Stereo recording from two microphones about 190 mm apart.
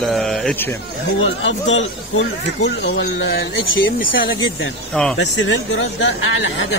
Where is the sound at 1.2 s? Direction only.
75° left (ahead or behind); by 4.0 s 55° left (ahead or behind).